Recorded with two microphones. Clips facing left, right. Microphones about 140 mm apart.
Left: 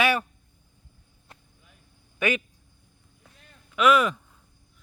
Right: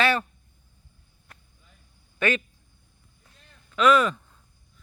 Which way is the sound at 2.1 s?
10° left (ahead or behind).